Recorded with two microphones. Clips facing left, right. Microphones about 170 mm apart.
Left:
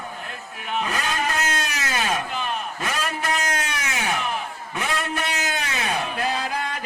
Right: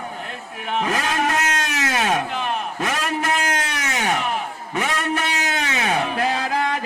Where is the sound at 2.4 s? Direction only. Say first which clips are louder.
Right 4 dB; 60° right (ahead or behind).